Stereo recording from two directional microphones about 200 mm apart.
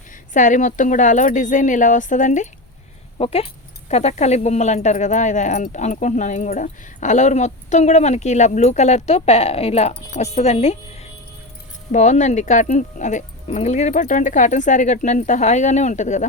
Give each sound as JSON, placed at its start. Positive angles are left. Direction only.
{"t": 0.3, "sound": "speech", "side_deg": 40}